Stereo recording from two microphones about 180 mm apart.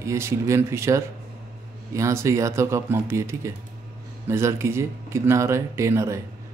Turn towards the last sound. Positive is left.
turn(degrees=-15)  # may be behind; listen again after turning